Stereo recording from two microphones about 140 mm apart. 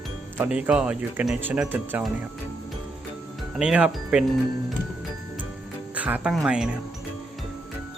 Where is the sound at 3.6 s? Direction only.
5° right (ahead or behind).